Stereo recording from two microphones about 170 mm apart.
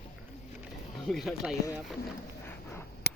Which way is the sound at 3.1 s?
70° left (ahead or behind).